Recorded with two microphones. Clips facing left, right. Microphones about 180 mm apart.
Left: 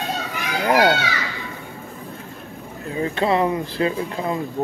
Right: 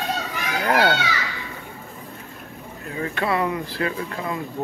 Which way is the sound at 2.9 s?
25° left (ahead or behind).